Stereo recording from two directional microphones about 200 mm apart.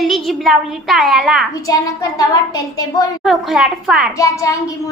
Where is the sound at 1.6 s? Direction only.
15° left (ahead or behind).